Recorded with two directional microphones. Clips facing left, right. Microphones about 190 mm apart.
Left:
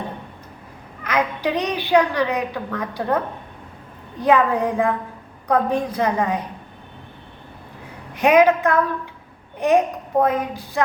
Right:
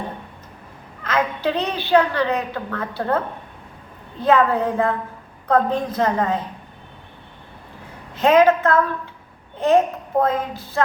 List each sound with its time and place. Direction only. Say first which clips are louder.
1.0 s a woman's voice: even; 15° left (ahead or behind)
4.2 s a woman's voice: even; 15° left (ahead or behind)
8.1 s a woman's voice: even; 15° left (ahead or behind)